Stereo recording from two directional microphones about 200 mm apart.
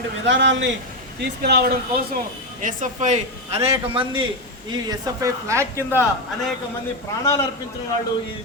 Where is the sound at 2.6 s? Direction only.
40° right (ahead or behind); by 6.0 s 10° right (ahead or behind).